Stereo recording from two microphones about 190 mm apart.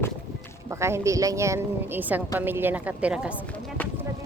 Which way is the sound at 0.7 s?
15° right (ahead or behind).